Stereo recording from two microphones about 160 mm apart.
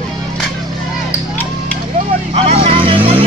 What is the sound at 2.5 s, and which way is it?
Vehicle, 35° right (ahead or behind).